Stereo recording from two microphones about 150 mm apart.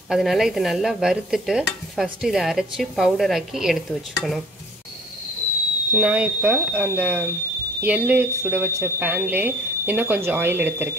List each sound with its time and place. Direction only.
0.1 s stir: centre (ahead or behind)
5.9 s speech: 10° right (ahead or behind)